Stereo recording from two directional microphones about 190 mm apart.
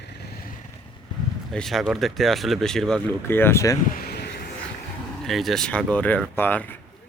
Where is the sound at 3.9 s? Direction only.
55° left (ahead or behind).